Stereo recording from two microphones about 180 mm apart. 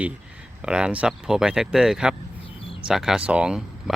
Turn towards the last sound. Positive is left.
turn(degrees=-5)  # may be behind; listen again after turning